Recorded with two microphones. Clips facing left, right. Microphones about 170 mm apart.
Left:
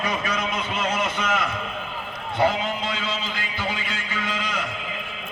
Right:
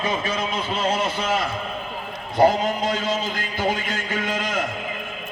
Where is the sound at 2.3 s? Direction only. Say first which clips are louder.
Right 5 dB; 40° right (ahead or behind).